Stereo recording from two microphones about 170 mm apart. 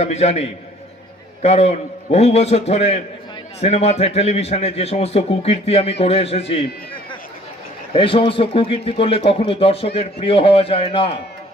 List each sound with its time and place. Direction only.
0.0 s a man's voice: 40° left (ahead or behind)